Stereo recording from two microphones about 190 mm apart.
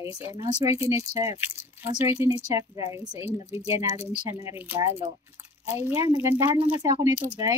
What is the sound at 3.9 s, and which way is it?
Speech, 30° left (ahead or behind).